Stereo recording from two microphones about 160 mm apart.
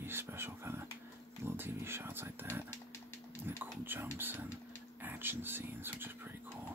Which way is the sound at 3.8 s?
15° right (ahead or behind).